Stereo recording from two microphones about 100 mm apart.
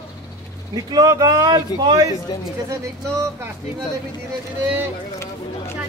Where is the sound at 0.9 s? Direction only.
40° right (ahead or behind).